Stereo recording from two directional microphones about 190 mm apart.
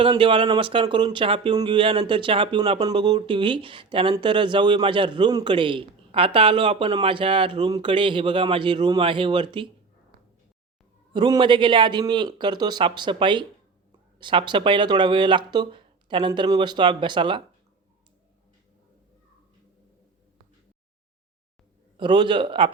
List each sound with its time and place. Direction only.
0.0 s speech: 25° right (ahead or behind)
11.1 s speech: 25° right (ahead or behind)
21.9 s speech: 25° right (ahead or behind)